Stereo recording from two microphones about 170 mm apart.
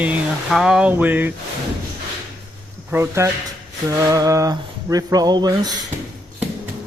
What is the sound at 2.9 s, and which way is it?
Speech, 15° right (ahead or behind).